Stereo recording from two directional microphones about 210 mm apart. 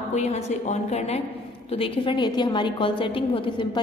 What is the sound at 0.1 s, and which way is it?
A woman's voice, 30° left (ahead or behind).